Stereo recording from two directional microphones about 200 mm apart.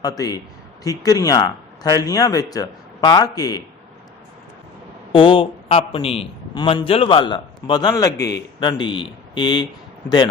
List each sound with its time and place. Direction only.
0.0 s a man's voice: 20° left (ahead or behind)
5.1 s a man's voice: 25° left (ahead or behind)